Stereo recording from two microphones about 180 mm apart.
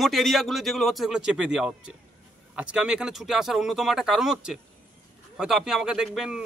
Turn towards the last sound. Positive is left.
turn(degrees=-5)  # may be behind; listen again after turning